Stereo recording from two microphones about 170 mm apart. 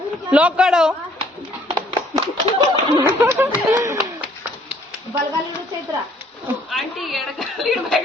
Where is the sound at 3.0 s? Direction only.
10° right (ahead or behind).